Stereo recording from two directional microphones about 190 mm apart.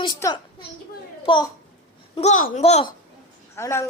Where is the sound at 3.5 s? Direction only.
15° left (ahead or behind).